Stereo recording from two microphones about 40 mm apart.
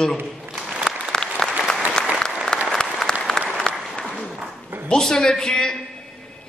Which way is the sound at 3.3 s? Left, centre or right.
Centre.